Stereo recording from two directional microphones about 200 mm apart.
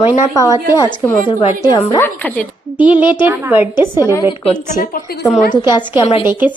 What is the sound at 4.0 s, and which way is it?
Speech, 15° left (ahead or behind).